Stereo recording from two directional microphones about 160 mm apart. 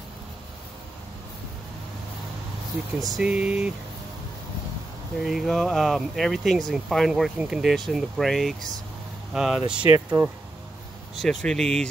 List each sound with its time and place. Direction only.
3.0 s speech: centre (ahead or behind)
5.2 s speech: centre (ahead or behind)
9.8 s speech: 15° right (ahead or behind)
11.1 s speech: 5° left (ahead or behind)